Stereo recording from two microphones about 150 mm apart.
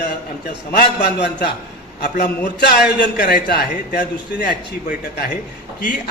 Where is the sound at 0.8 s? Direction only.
90° left.